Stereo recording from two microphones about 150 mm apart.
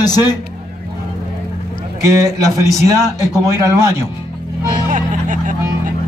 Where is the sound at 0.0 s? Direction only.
25° left (ahead or behind).